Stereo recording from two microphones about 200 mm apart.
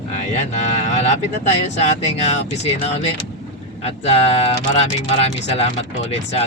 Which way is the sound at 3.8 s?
30° left (ahead or behind).